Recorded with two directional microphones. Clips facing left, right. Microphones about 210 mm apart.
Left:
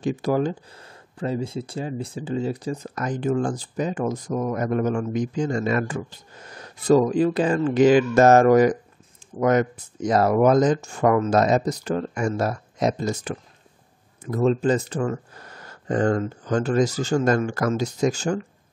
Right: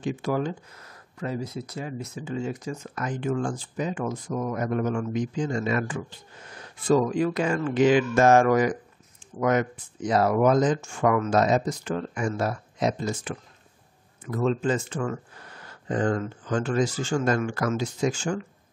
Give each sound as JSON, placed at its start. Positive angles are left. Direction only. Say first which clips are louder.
{"t": 0.0, "sound": "speech", "louder": "left 4 dB", "side_deg": 35}